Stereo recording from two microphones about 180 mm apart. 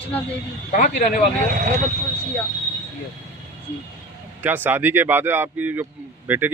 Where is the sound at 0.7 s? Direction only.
45° left (ahead or behind).